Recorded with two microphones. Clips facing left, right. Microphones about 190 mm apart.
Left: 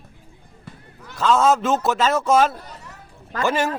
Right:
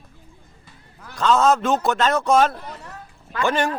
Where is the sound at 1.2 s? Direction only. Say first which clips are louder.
Even; 5° left (ahead or behind).